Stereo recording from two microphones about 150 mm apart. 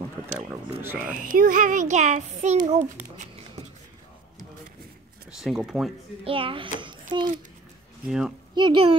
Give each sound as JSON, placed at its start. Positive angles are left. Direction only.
{"t": 0.5, "sound": "speech", "side_deg": -10}
{"t": 1.1, "sound": "speech", "side_deg": -65}
{"t": 5.4, "sound": "speech", "side_deg": -5}
{"t": 6.2, "sound": "a child's voice", "side_deg": -35}
{"t": 8.5, "sound": "speech", "side_deg": -35}